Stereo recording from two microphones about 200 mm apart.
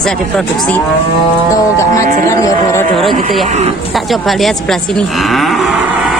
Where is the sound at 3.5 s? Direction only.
35° right (ahead or behind).